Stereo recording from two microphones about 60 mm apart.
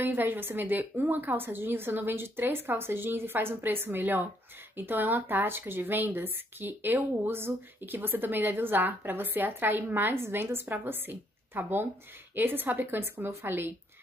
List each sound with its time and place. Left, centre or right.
0.0 s speech: right